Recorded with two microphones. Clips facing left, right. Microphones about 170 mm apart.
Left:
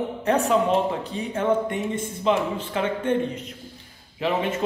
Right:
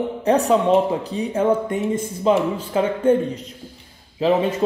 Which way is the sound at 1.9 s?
40° right (ahead or behind).